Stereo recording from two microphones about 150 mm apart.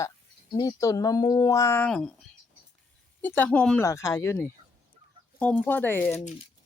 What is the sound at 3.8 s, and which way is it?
Speech, 20° left (ahead or behind).